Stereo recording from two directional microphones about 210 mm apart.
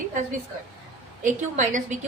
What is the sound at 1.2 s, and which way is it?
Speech, 35° right (ahead or behind).